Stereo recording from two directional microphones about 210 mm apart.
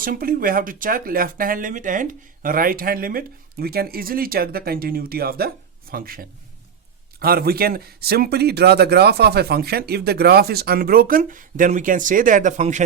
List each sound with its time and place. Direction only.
0.0 s a man's voice: 45° right (ahead or behind)